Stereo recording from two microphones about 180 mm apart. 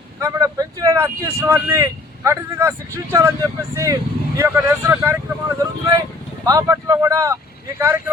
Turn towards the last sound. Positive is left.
turn(degrees=-15)  # may be behind; listen again after turning